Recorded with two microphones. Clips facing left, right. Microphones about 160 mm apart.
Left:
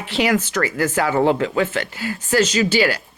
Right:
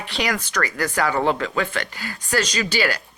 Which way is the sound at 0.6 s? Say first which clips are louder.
Left 3 dB; 10° left (ahead or behind).